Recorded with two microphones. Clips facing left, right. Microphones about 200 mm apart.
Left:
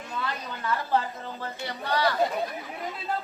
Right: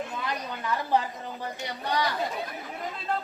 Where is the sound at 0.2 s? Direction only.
15° right (ahead or behind).